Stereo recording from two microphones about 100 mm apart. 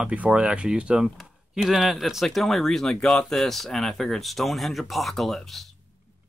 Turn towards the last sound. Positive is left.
turn(degrees=0)  # may be behind; listen again after turning